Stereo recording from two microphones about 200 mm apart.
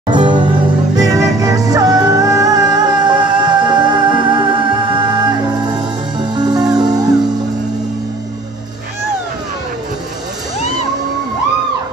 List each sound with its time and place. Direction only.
0.1 s music: 20° right (ahead or behind)